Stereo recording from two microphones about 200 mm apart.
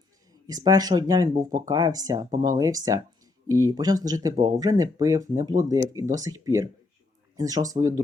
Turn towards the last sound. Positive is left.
turn(degrees=-15)  # may be behind; listen again after turning